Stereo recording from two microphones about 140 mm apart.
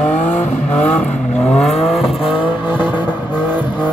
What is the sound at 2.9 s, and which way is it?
Vehicle, 35° left (ahead or behind).